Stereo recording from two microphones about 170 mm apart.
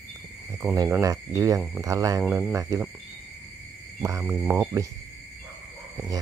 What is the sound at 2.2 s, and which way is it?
Speech, 10° right (ahead or behind).